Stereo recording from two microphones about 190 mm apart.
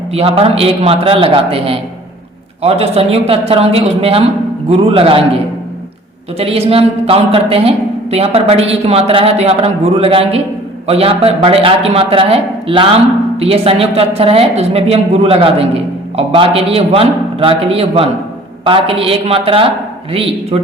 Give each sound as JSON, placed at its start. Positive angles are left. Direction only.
{"t": 0.1, "sound": "a man's voice", "side_deg": -30}
{"t": 6.4, "sound": "a man's voice", "side_deg": -30}